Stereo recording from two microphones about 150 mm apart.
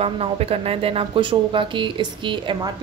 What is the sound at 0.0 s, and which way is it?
Speech, 40° right (ahead or behind).